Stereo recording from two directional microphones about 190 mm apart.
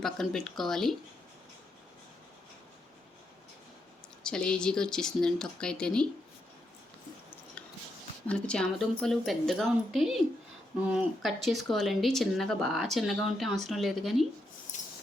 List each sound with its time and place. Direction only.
0.0 s speech: centre (ahead or behind)
4.2 s speech: 5° left (ahead or behind)
8.3 s speech: 5° left (ahead or behind)
14.7 s rub: 40° left (ahead or behind)